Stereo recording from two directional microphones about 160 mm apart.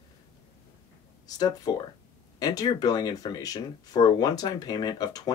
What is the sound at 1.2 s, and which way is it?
Speech, 25° left (ahead or behind).